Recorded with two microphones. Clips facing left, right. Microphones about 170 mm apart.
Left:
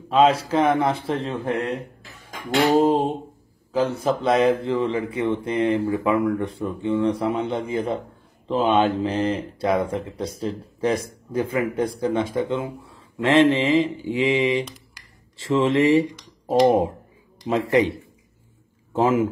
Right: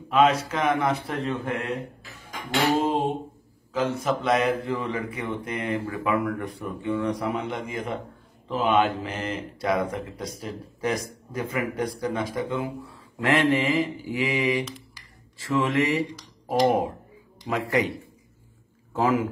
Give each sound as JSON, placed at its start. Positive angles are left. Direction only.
{"t": 0.1, "sound": "speech", "side_deg": 30}
{"t": 2.6, "sound": "a sound", "side_deg": 35}
{"t": 3.7, "sound": "speech", "side_deg": 35}
{"t": 18.9, "sound": "speech", "side_deg": 20}